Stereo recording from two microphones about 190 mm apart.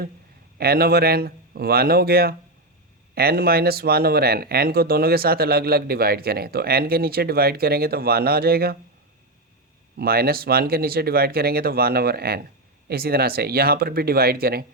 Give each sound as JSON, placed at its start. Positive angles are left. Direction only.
{"t": 0.6, "sound": "speech", "side_deg": -55}
{"t": 10.0, "sound": "speech", "side_deg": -55}